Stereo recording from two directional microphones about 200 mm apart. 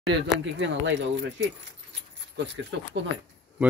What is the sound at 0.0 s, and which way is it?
Speech, 60° right (ahead or behind).